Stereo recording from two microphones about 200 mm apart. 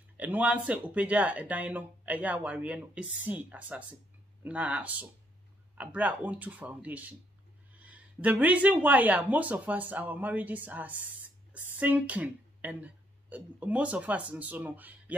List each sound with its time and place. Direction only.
0.2 s speech: 10° right (ahead or behind)